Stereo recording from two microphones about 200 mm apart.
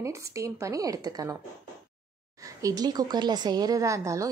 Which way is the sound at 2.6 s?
20° right (ahead or behind).